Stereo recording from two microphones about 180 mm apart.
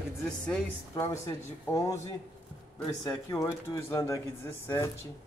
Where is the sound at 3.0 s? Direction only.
20° left (ahead or behind).